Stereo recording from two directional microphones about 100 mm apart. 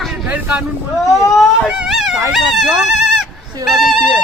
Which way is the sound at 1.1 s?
30° left (ahead or behind).